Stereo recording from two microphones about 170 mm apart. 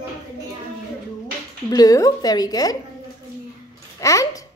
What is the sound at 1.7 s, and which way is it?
A woman's voice, 20° left (ahead or behind).